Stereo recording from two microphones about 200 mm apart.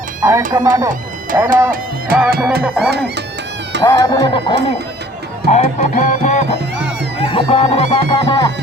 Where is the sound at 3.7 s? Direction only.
60° right (ahead or behind).